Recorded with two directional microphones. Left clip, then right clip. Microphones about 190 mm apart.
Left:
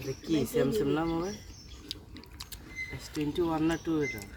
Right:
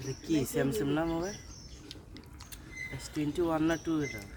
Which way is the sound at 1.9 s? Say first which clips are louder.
Left 9 dB; 40° left (ahead or behind).